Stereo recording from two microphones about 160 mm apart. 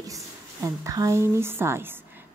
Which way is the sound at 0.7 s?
20° right (ahead or behind).